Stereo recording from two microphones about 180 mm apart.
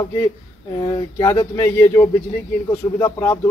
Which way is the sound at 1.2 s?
15° left (ahead or behind).